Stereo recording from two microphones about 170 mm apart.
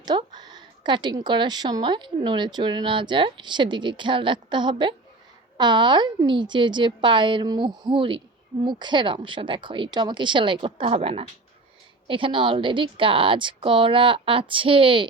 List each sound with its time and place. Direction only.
0.0 s a woman's voice: 25° right (ahead or behind)